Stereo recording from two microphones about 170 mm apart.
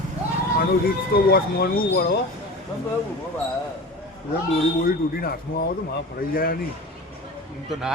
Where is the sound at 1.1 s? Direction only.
65° left (ahead or behind).